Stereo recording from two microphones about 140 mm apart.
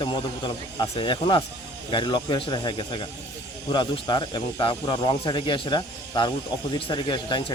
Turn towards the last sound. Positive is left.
turn(degrees=35)  # may be behind; listen again after turning